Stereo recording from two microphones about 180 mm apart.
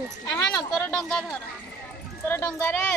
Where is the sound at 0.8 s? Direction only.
5° left (ahead or behind).